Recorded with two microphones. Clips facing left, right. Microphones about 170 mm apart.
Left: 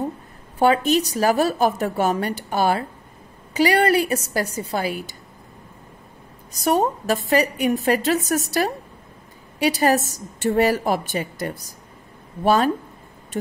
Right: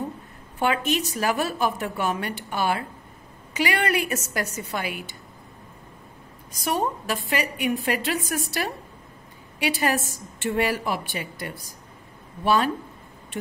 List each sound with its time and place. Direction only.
0.6 s a woman's voice: 35° left (ahead or behind)
6.5 s a woman's voice: 40° left (ahead or behind)